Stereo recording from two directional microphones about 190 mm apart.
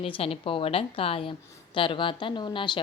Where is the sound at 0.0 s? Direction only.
30° left (ahead or behind).